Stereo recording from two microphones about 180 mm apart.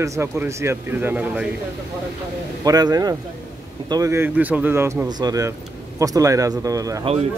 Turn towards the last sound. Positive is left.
turn(degrees=-20)  # may be behind; listen again after turning